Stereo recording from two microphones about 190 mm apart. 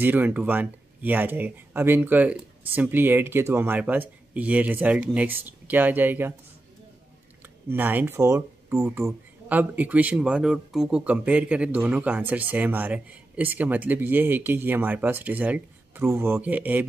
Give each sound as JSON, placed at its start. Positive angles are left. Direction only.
{"t": 0.0, "sound": "speech", "side_deg": -10}
{"t": 7.7, "sound": "speech", "side_deg": -10}